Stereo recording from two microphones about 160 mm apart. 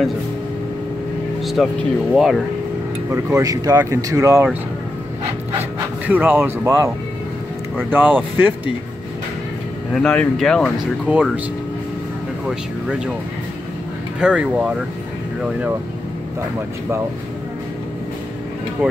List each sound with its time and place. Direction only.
1.4 s speech: centre (ahead or behind)
3.1 s speech: 15° right (ahead or behind)
6.0 s speech: 10° right (ahead or behind)
7.9 s speech: 10° right (ahead or behind)
10.0 s speech: 5° left (ahead or behind)
11.1 s speech: 10° right (ahead or behind)
12.4 s speech: 5° right (ahead or behind)
14.2 s speech: 5° right (ahead or behind)